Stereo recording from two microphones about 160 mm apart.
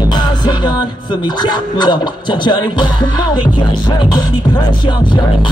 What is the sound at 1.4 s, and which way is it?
Speech, 25° left (ahead or behind).